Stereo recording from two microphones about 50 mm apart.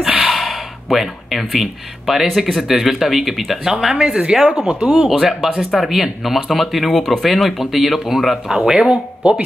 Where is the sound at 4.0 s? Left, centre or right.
Right.